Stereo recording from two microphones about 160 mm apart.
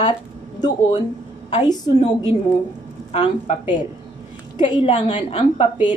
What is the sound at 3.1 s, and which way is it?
Speech, 40° left (ahead or behind).